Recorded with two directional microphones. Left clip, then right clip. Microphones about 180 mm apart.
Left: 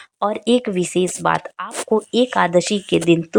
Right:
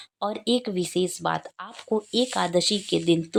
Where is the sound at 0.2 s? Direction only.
15° left (ahead or behind).